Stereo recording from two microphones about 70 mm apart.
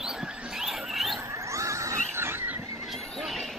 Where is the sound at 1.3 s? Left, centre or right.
Right.